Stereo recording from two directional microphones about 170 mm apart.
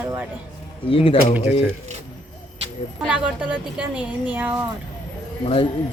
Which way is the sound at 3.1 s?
5° right (ahead or behind).